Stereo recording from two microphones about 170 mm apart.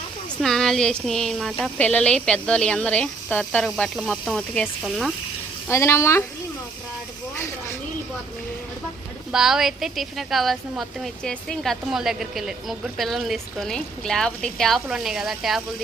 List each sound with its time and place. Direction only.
0.4 s a woman's voice: 5° left (ahead or behind)
5.6 s speech: 15° left (ahead or behind)
7.3 s a sound: 15° left (ahead or behind)
9.3 s a woman's voice: centre (ahead or behind)